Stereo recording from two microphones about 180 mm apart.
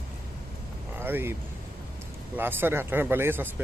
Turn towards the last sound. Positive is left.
turn(degrees=-10)  # may be behind; listen again after turning